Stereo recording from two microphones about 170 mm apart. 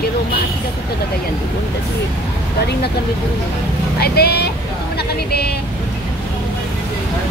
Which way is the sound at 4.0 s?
70° left (ahead or behind).